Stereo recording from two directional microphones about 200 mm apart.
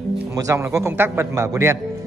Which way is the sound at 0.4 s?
15° right (ahead or behind).